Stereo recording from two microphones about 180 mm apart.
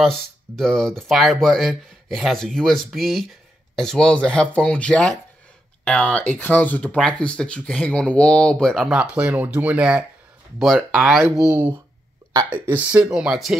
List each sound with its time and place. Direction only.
0.0 s speech: centre (ahead or behind)